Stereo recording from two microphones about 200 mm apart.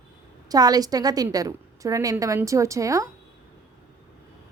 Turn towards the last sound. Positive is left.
turn(degrees=-15)  # may be behind; listen again after turning